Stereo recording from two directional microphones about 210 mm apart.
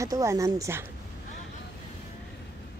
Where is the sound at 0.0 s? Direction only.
15° right (ahead or behind).